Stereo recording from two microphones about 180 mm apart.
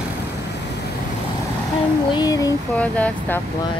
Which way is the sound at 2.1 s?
20° left (ahead or behind).